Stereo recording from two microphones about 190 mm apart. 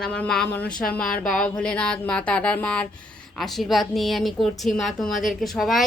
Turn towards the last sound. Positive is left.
turn(degrees=0)  # may be behind; listen again after turning